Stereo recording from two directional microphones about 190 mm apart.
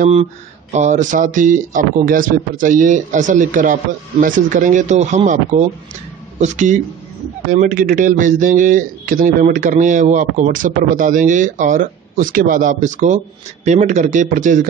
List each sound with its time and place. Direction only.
0.0 s a man's voice: 35° right (ahead or behind)